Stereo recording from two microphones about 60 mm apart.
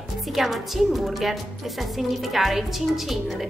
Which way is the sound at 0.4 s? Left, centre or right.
Centre.